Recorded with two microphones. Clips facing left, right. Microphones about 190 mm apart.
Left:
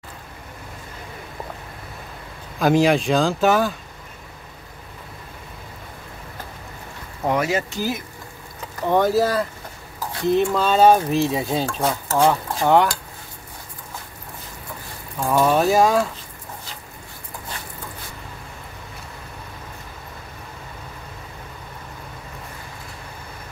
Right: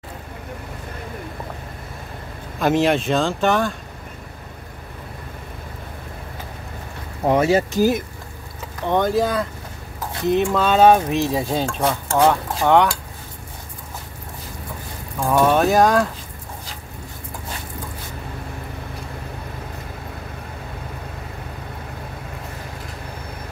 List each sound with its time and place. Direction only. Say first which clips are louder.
2.6 s speech: left 1 dB; centre (ahead or behind)
7.2 s speech: right 5 dB; 30° right (ahead or behind)
8.8 s speech: left 1 dB; 5° left (ahead or behind)
10.5 s speech: right 2 dB; centre (ahead or behind)
15.2 s speech: right 1 dB; 5° right (ahead or behind)